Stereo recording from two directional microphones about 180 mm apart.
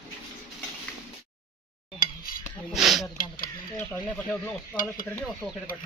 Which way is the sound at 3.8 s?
15° left (ahead or behind).